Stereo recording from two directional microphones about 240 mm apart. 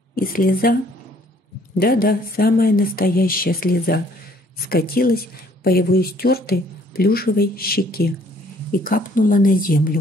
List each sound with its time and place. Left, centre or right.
0.1 s speech: left
1.8 s speech: left